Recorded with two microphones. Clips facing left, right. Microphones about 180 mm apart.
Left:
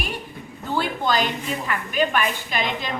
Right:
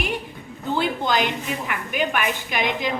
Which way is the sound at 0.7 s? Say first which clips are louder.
Even; 20° right (ahead or behind).